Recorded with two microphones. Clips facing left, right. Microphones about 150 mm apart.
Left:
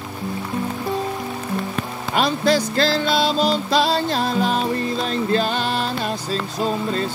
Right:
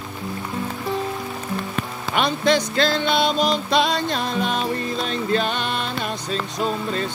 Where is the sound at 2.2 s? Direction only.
35° left (ahead or behind).